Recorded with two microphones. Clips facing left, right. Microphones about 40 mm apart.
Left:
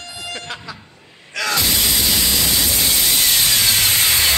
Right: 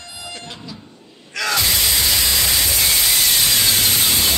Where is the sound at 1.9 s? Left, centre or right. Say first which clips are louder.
Even; right.